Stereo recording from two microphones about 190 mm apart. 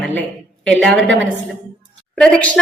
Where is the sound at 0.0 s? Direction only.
10° left (ahead or behind).